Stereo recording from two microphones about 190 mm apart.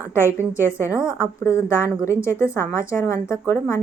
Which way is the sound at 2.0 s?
15° left (ahead or behind).